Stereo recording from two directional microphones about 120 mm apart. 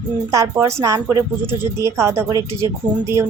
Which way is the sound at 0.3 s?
25° right (ahead or behind).